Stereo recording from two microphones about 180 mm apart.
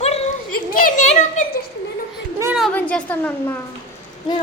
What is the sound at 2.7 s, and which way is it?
Speech, 10° left (ahead or behind).